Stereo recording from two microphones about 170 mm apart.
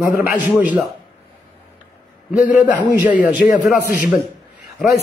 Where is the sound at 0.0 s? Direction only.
55° left (ahead or behind).